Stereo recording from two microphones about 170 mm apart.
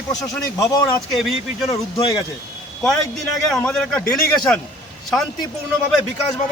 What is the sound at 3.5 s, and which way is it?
A man's voice, 5° left (ahead or behind).